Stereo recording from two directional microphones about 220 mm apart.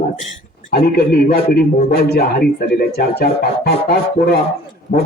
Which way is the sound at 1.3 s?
45° left (ahead or behind).